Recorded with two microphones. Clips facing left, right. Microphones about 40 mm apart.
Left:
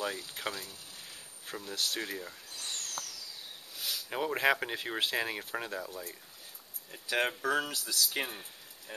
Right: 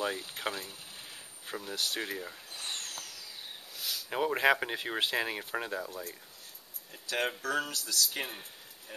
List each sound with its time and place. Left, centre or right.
0.3 s speech: centre
2.5 s a sound: right
3.8 s speech: centre